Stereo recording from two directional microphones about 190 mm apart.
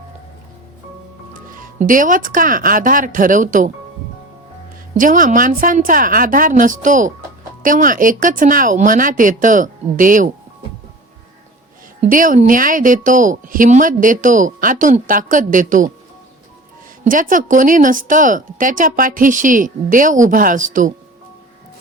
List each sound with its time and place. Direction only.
1.3 s speech: 45° right (ahead or behind)
4.9 s a woman's voice: 45° right (ahead or behind)
11.9 s a woman's voice: 45° right (ahead or behind)
17.0 s a woman's voice: 45° right (ahead or behind)